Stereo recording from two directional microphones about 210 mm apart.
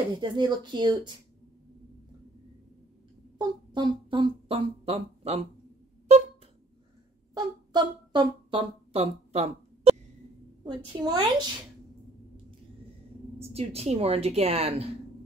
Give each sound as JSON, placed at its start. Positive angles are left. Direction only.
{"t": 0.2, "sound": "speech", "side_deg": -20}
{"t": 3.3, "sound": "speech", "side_deg": -20}
{"t": 7.3, "sound": "speech", "side_deg": -20}
{"t": 13.4, "sound": "speech", "side_deg": -30}